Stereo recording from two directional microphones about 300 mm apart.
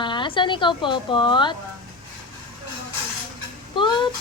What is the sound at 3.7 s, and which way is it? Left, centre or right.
Dog, centre.